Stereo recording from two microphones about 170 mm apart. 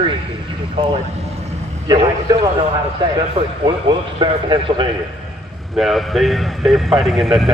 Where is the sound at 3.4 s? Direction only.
30° right (ahead or behind).